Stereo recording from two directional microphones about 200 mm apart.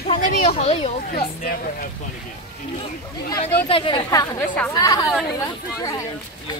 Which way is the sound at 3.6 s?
25° left (ahead or behind).